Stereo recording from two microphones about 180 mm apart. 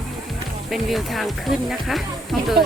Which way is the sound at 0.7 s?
Centre (ahead or behind).